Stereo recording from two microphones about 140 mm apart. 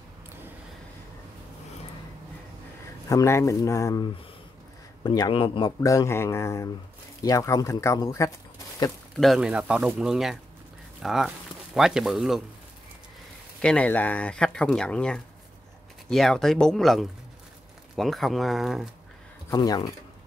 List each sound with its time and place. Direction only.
3.1 s speech: 20° left (ahead or behind); by 5.7 s 40° left (ahead or behind)
5.8 s speech: 20° left (ahead or behind)
9.1 s speech: centre (ahead or behind)
13.6 s speech: 10° left (ahead or behind)
19.5 s speech: 30° left (ahead or behind)